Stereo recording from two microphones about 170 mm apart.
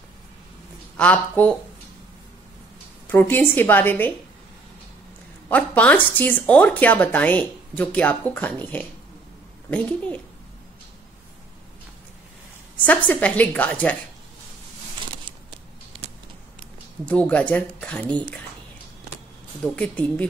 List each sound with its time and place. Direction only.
0.9 s speech: 10° left (ahead or behind)
3.1 s speech: 10° left (ahead or behind)
5.5 s speech: 10° left (ahead or behind)
12.8 s speech: 10° left (ahead or behind)
15.2 s a sound: 30° right (ahead or behind)
17.0 s speech: 5° left (ahead or behind)
19.7 s speech: 5° left (ahead or behind)